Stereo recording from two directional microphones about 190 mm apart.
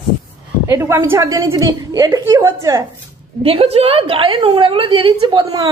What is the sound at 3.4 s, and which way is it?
A woman's voice, 30° right (ahead or behind).